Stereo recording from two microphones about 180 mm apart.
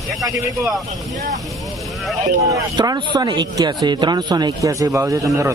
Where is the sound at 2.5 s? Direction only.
20° right (ahead or behind).